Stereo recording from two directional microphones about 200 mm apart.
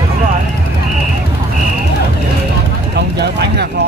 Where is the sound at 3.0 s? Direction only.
55° right (ahead or behind).